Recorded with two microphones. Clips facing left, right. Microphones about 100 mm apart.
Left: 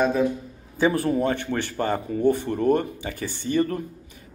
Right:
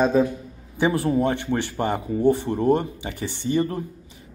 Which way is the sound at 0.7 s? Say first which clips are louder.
Even; 20° right (ahead or behind).